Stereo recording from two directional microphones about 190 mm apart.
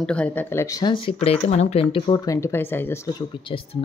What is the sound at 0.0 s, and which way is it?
A woman's voice, 5° left (ahead or behind).